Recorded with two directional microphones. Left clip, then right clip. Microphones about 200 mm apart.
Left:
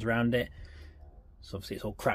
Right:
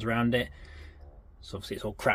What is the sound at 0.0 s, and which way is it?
Speech, 25° left (ahead or behind).